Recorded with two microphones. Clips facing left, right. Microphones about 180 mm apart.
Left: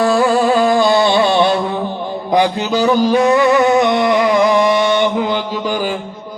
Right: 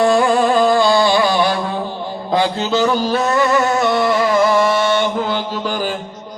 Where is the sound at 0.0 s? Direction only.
5° left (ahead or behind).